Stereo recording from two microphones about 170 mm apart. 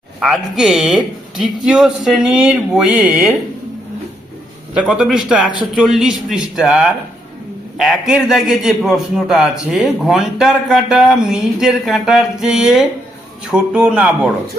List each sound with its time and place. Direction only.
0.2 s a man's voice: centre (ahead or behind)
4.8 s a man's voice: 5° right (ahead or behind)